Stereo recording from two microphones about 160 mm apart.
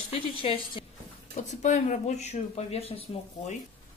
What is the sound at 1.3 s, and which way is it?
Speech, 45° left (ahead or behind).